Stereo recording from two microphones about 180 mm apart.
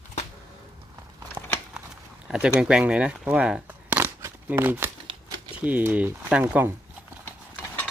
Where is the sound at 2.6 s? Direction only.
5° right (ahead or behind).